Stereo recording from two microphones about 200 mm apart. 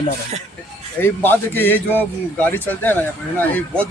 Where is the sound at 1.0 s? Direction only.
10° left (ahead or behind).